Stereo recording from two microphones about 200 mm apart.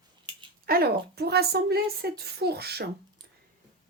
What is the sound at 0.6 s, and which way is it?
A woman's voice, 50° right (ahead or behind).